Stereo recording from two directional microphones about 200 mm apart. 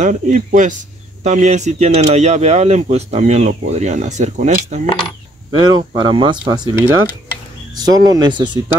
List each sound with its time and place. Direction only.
0.0 s speech: 40° right (ahead or behind)
4.8 s coin: 25° left (ahead or behind)
5.5 s speech: 20° right (ahead or behind)